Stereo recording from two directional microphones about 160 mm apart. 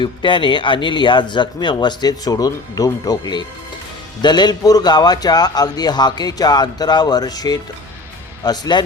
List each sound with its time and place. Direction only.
0.0 s speech: 30° left (ahead or behind)